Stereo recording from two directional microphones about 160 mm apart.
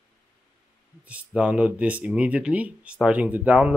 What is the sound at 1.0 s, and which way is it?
Speech, 5° right (ahead or behind).